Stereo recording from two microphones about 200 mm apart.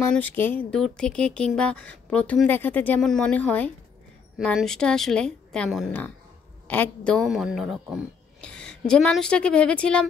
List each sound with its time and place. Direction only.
0.1 s speech: 10° left (ahead or behind)